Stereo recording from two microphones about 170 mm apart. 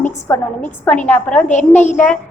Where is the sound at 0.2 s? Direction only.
10° left (ahead or behind).